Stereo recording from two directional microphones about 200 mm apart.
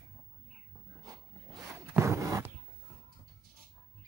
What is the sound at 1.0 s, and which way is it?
Zipper, 15° right (ahead or behind).